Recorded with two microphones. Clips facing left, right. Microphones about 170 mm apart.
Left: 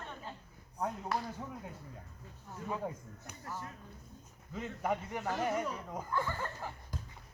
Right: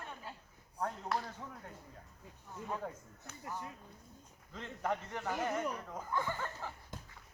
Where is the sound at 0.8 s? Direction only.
5° left (ahead or behind).